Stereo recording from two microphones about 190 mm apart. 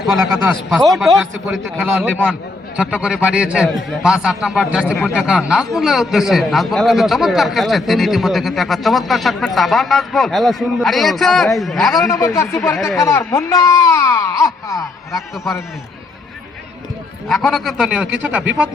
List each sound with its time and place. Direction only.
0.7 s a man's voice: centre (ahead or behind)
12.1 s speech: 15° left (ahead or behind)
17.2 s a man's voice: centre (ahead or behind)